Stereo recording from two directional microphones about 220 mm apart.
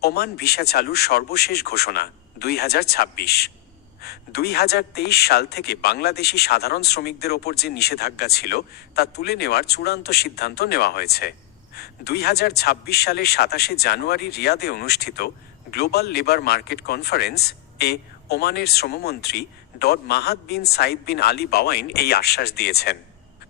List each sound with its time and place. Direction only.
0.0 s speech: 45° left (ahead or behind)